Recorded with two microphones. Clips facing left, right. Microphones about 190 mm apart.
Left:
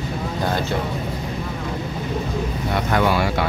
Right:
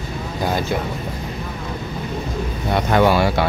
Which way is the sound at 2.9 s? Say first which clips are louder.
Right 4 dB; 30° right (ahead or behind).